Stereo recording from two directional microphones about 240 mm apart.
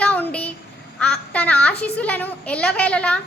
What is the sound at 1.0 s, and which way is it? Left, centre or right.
A woman's voice, centre.